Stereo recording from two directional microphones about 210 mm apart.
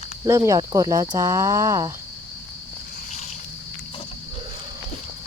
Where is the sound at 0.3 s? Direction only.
15° right (ahead or behind).